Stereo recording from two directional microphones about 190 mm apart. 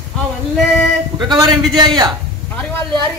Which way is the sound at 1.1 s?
20° right (ahead or behind).